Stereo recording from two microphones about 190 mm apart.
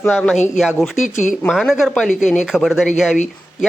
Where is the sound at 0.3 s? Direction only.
40° left (ahead or behind).